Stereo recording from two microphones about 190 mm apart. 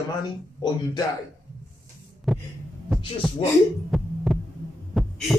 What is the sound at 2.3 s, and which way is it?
Heart sounds, centre (ahead or behind).